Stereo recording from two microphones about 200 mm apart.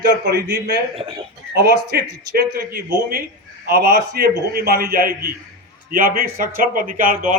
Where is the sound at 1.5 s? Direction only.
50° right (ahead or behind).